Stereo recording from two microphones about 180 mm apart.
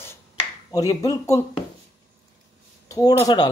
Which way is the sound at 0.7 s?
20° left (ahead or behind).